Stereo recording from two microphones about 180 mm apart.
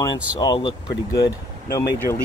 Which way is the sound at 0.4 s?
25° left (ahead or behind).